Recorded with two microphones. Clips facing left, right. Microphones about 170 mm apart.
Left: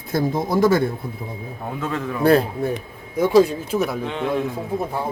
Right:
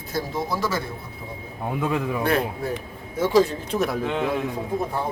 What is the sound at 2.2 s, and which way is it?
Speech, 30° left (ahead or behind).